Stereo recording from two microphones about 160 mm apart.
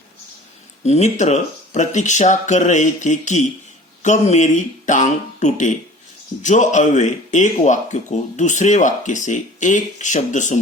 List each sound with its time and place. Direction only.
0.9 s speech: 45° left (ahead or behind)